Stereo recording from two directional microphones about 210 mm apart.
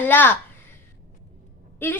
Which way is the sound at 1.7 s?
10° left (ahead or behind).